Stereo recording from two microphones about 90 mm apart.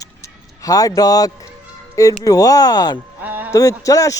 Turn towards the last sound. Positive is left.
turn(degrees=40)  # may be behind; listen again after turning